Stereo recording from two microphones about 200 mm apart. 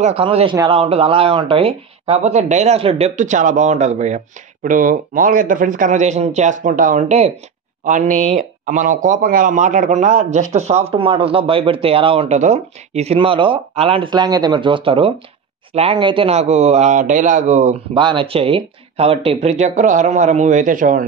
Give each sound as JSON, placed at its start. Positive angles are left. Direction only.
{"t": 0.0, "sound": "speech", "side_deg": -30}